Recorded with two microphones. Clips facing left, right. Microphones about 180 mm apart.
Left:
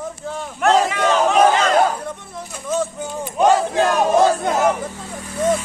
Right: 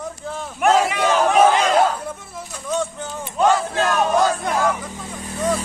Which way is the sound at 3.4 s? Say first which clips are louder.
Left 3 dB; 20° left (ahead or behind).